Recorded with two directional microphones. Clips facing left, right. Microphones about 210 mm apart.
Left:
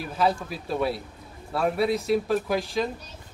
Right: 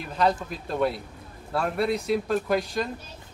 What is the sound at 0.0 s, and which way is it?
Speech, 5° left (ahead or behind).